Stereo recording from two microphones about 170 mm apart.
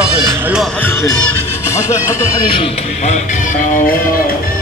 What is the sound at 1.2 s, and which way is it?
Music, 15° right (ahead or behind).